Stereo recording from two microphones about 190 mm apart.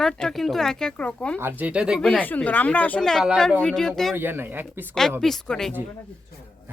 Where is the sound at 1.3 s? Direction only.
10° right (ahead or behind).